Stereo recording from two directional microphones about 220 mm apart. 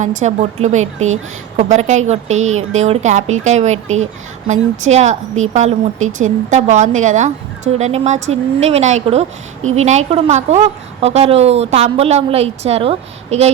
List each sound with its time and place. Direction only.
0.0 s a woman's voice: 35° right (ahead or behind)
0.9 s a woman's voice: 65° right (ahead or behind)
1.5 s a woman's voice: 35° right (ahead or behind)
3.8 s a woman's voice: 65° right (ahead or behind)
4.4 s a woman's voice: 30° right (ahead or behind)
6.0 s speech: 65° right (ahead or behind)
6.5 s a woman's voice: 35° right (ahead or behind)